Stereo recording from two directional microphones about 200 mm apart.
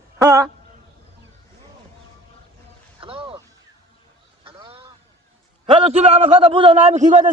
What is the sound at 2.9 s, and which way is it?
Music, 25° right (ahead or behind).